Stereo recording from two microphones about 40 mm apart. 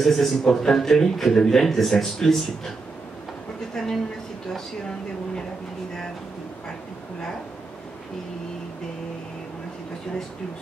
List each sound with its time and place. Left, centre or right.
0.0 s a man's voice: centre
3.7 s a man's voice: centre